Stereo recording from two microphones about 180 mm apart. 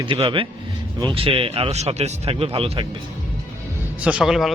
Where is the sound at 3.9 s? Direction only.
5° right (ahead or behind).